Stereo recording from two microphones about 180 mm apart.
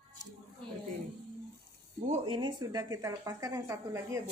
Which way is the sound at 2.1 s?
30° right (ahead or behind).